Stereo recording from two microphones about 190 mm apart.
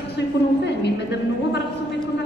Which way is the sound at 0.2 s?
65° left (ahead or behind).